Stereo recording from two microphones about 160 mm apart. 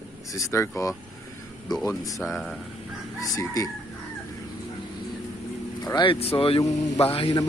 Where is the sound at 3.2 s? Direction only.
20° left (ahead or behind).